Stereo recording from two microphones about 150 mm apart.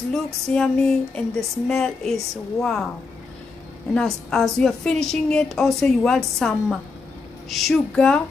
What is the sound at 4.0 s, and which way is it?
Music, 5° left (ahead or behind).